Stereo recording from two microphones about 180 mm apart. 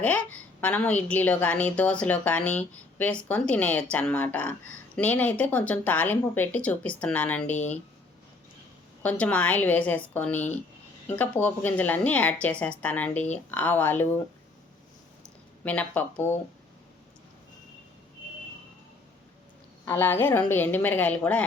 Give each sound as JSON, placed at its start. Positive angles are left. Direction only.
{"t": 0.0, "sound": "a woman's voice", "side_deg": 10}
{"t": 7.5, "sound": "speech", "side_deg": 40}
{"t": 9.0, "sound": "a woman's voice", "side_deg": 10}
{"t": 15.6, "sound": "a woman's voice", "side_deg": 10}
{"t": 19.8, "sound": "a woman's voice", "side_deg": 10}